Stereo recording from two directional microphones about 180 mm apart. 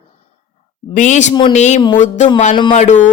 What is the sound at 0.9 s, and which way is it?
Speech, 40° left (ahead or behind).